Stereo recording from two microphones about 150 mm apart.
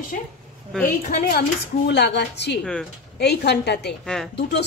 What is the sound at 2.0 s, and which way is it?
Speech, 90° left.